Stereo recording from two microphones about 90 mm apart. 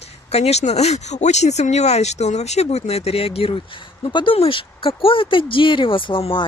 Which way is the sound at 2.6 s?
90° left.